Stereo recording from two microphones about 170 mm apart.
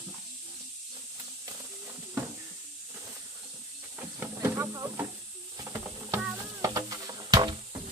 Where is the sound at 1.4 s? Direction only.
10° right (ahead or behind).